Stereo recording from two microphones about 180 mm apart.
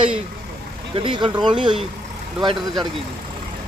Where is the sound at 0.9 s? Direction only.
25° right (ahead or behind).